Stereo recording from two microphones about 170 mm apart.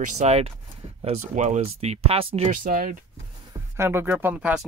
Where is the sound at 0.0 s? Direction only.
45° right (ahead or behind).